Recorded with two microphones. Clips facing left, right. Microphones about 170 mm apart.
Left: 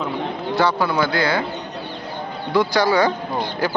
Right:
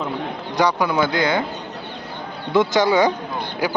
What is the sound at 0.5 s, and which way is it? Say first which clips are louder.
Speech: right 1 dB; 15° right (ahead or behind).